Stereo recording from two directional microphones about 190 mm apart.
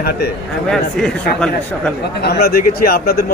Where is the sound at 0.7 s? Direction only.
Centre (ahead or behind).